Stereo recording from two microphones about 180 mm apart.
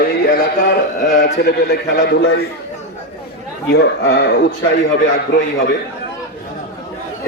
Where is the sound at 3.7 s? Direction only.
65° left (ahead or behind).